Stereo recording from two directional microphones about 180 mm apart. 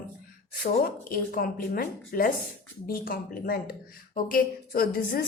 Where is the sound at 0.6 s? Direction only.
55° left (ahead or behind).